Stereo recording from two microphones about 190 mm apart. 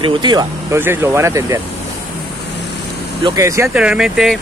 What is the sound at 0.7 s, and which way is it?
Speech, 10° right (ahead or behind).